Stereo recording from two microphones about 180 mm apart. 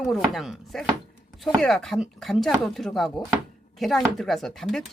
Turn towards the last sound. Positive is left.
turn(degrees=0)  # may be behind; listen again after turning